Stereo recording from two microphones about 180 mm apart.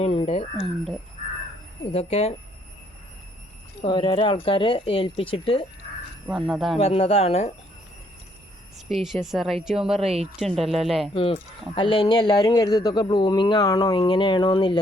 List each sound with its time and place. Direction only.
0.0 s speech: 35° left (ahead or behind)
0.5 s a woman's voice: centre (ahead or behind)
1.9 s speech: 35° left (ahead or behind)
3.8 s speech: 30° left (ahead or behind)
6.2 s a woman's voice: 5° right (ahead or behind)
6.7 s speech: 35° left (ahead or behind)
8.9 s a woman's voice: centre (ahead or behind)
10.0 s speech: 35° right (ahead or behind)
10.3 s a woman's voice: centre (ahead or behind)
11.1 s speech: 30° left (ahead or behind)